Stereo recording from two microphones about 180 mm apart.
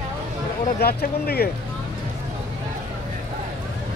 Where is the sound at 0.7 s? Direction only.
60° left (ahead or behind).